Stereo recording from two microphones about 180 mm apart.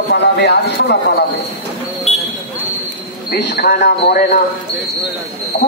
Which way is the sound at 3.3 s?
70° left (ahead or behind).